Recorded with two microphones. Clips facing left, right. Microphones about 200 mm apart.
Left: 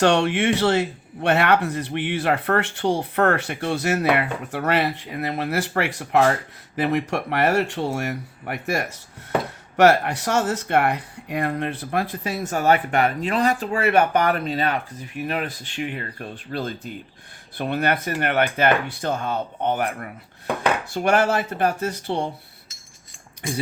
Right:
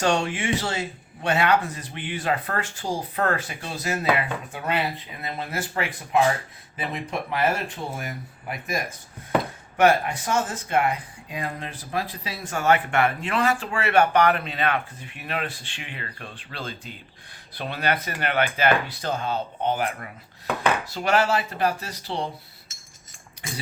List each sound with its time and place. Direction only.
0.0 s speech: 65° left (ahead or behind)
6.7 s speech: 75° left (ahead or behind); by 22.3 s 55° left (ahead or behind)